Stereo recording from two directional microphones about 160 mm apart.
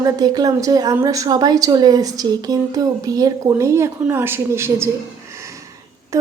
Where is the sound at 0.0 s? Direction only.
25° right (ahead or behind).